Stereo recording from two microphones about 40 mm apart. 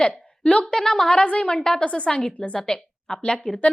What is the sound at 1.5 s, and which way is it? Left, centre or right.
A woman's voice, centre.